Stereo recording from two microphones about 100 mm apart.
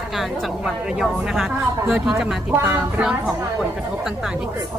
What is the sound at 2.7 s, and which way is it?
Speech, 15° right (ahead or behind).